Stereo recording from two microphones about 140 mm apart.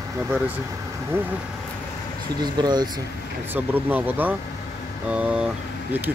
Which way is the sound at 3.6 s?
10° right (ahead or behind).